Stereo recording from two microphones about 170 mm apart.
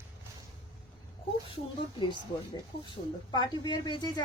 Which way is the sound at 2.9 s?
25° left (ahead or behind).